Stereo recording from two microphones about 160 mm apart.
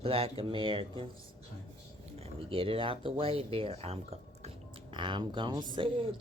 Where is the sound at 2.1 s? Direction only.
35° right (ahead or behind).